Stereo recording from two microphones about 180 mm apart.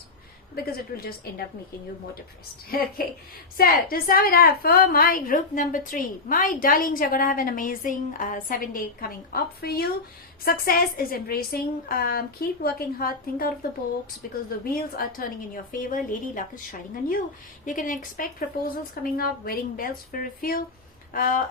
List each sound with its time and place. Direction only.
0.5 s a woman's voice: 55° left (ahead or behind)
2.6 s a woman's voice: 55° left (ahead or behind)